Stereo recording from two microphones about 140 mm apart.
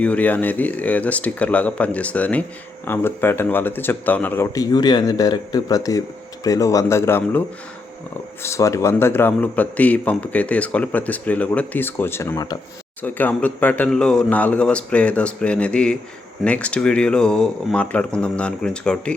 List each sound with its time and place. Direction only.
0.0 s a man's voice: 10° left (ahead or behind)
8.4 s a man's voice: 20° left (ahead or behind)
13.0 s a man's voice: 10° left (ahead or behind)